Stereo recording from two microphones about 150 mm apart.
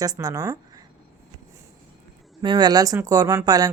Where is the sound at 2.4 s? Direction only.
30° right (ahead or behind).